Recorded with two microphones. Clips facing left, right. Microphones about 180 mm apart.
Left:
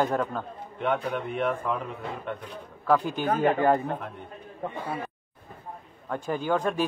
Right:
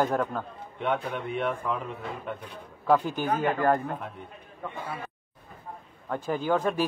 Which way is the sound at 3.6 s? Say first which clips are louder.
Left 2 dB; 5° left (ahead or behind).